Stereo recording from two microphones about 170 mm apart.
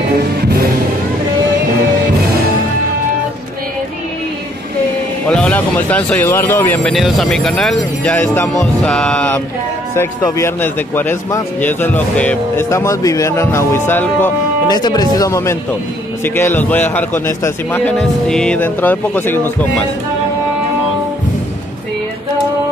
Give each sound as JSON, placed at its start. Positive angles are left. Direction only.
{"t": 5.3, "sound": "speech", "side_deg": 10}
{"t": 9.9, "sound": "a man's voice", "side_deg": 15}
{"t": 14.7, "sound": "a man's voice", "side_deg": 25}